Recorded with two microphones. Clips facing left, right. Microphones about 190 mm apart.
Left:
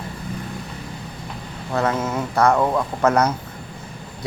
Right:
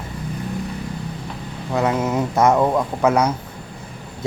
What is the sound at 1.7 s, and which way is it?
Speech, 15° right (ahead or behind).